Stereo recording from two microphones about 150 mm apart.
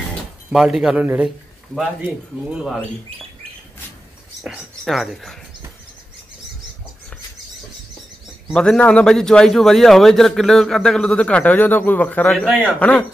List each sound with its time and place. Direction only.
0.5 s a man's voice: 5° right (ahead or behind)
2.5 s a man's voice: 5° right (ahead or behind)
4.4 s speech: centre (ahead or behind)
8.5 s a man's voice: 5° left (ahead or behind)